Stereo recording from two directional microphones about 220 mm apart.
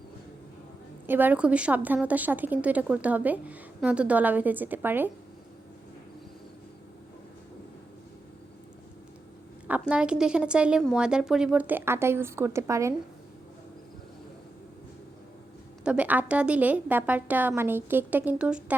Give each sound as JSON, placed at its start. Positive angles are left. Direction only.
{"t": 1.0, "sound": "a woman's voice", "side_deg": -10}
{"t": 9.9, "sound": "speech", "side_deg": -5}
{"t": 15.8, "sound": "a woman's voice", "side_deg": -5}